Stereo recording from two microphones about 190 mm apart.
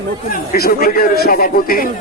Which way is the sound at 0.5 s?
50° left (ahead or behind).